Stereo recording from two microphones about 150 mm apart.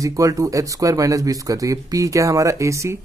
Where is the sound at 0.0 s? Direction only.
20° right (ahead or behind).